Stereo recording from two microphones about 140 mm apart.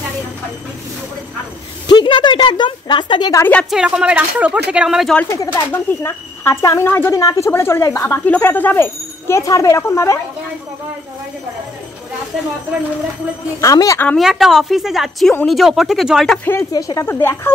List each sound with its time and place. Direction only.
1.9 s speech: 30° left (ahead or behind)
3.7 s speech: 5° right (ahead or behind)
5.3 s speech: 20° left (ahead or behind)
13.6 s speech: 25° left (ahead or behind)
14.0 s a woman's voice: centre (ahead or behind)
16.7 s speech: 25° left (ahead or behind)